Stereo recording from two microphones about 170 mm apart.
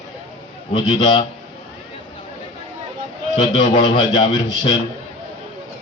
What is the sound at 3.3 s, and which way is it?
A man's voice, 25° left (ahead or behind).